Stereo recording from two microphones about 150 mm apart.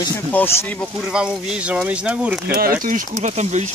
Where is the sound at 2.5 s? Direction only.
75° right (ahead or behind); by 3.7 s 50° right (ahead or behind).